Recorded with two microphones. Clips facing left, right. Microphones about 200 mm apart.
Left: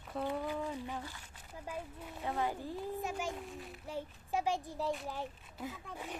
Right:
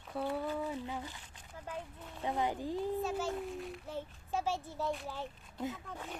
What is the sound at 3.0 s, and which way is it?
Speech, 15° left (ahead or behind).